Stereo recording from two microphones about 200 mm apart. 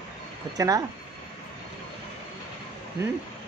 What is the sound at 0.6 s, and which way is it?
Speech, 15° right (ahead or behind).